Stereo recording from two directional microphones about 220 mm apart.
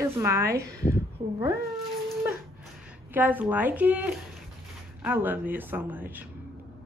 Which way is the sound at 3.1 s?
10° right (ahead or behind).